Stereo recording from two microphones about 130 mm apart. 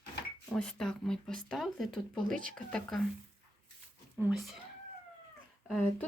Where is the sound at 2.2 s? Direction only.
90° right.